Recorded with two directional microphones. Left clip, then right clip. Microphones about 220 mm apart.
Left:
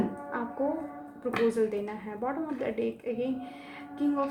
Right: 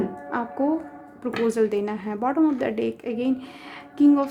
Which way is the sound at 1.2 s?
45° right (ahead or behind).